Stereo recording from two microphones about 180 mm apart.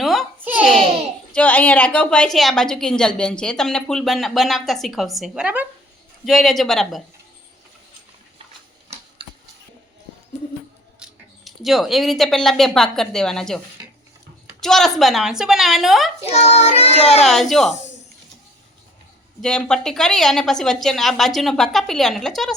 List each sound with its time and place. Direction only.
0.0 s a sound: centre (ahead or behind)
1.3 s a woman's voice: 10° left (ahead or behind)
11.0 s speech: centre (ahead or behind)
14.6 s a woman's voice: centre (ahead or behind)
16.3 s child singing: 35° left (ahead or behind)
17.2 s a woman's voice: centre (ahead or behind)
19.4 s a woman's voice: 5° left (ahead or behind)